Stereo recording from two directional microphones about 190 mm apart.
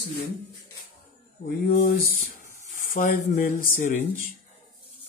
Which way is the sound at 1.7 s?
45° left (ahead or behind).